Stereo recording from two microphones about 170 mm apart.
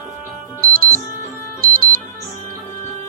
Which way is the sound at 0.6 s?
60° right (ahead or behind).